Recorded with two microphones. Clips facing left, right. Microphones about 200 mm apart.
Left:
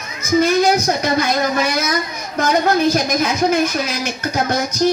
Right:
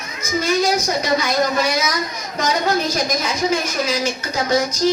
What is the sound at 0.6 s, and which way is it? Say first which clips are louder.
Speech: left 3 dB; 55° left (ahead or behind).